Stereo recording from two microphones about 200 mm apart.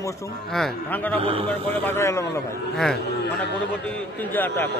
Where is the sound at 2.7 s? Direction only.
Centre (ahead or behind).